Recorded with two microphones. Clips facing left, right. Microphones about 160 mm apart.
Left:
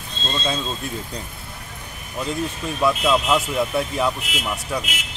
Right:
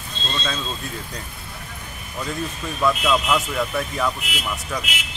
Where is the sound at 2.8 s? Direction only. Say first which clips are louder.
Left 1 dB; 20° left (ahead or behind).